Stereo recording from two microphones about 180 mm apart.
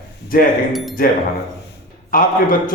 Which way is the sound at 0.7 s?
Centre (ahead or behind).